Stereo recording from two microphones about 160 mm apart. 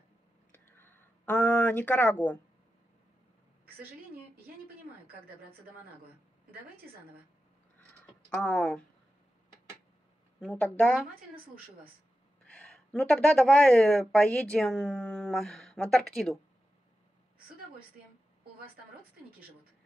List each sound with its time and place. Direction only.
0.5 s a sound: 10° left (ahead or behind)
8.4 s speech: 5° left (ahead or behind)
10.4 s speech: 10° left (ahead or behind)
11.3 s a woman's voice: 65° right (ahead or behind)
12.5 s speech: 5° left (ahead or behind)